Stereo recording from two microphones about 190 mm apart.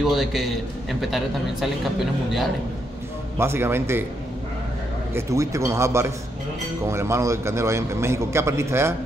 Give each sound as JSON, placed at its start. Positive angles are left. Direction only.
{"t": 0.0, "sound": "a man's voice", "side_deg": 0}
{"t": 3.3, "sound": "a man's voice", "side_deg": -10}
{"t": 5.1, "sound": "a man's voice", "side_deg": -15}